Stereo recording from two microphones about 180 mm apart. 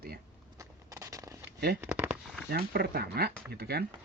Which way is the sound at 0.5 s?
15° right (ahead or behind).